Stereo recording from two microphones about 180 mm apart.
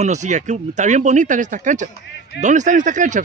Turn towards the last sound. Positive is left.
turn(degrees=-45)  # may be behind; listen again after turning